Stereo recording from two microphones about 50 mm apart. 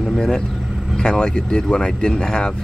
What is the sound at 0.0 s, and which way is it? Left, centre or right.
Vehicle, centre.